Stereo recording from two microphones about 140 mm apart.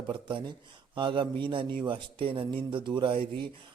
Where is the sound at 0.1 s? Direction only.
35° right (ahead or behind).